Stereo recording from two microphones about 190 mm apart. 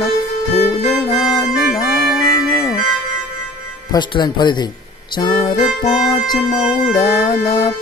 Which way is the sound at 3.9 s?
25° left (ahead or behind).